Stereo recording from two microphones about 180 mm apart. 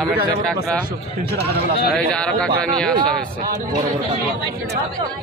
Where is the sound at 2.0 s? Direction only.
5° left (ahead or behind).